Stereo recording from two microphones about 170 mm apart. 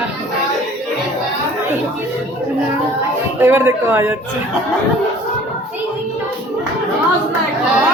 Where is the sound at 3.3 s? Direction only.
15° right (ahead or behind).